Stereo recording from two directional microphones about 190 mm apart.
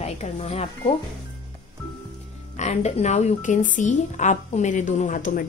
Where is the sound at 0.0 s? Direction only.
35° left (ahead or behind).